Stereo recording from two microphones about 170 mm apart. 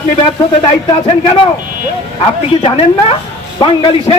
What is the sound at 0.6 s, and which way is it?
Speech, 30° left (ahead or behind).